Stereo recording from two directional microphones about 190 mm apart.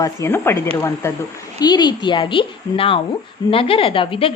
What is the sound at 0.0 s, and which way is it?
A woman's voice, 15° left (ahead or behind).